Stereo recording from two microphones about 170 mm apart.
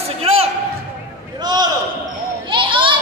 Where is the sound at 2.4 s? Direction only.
30° right (ahead or behind).